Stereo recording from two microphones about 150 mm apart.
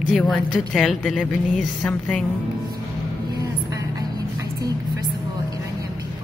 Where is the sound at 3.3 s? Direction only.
25° right (ahead or behind).